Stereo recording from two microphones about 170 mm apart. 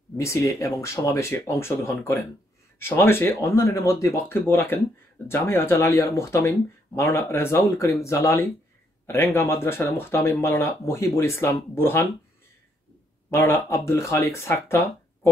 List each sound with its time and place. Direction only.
0.2 s speech: 15° left (ahead or behind)
13.3 s speech: 15° left (ahead or behind)